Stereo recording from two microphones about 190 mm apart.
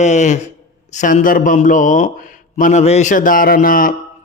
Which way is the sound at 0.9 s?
40° left (ahead or behind).